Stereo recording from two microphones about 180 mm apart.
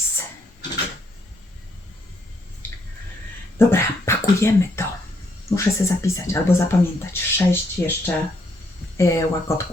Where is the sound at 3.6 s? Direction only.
15° left (ahead or behind).